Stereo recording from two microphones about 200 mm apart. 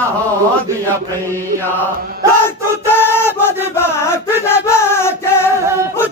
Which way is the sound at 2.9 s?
10° left (ahead or behind).